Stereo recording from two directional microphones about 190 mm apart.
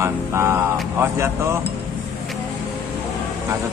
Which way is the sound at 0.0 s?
15° right (ahead or behind).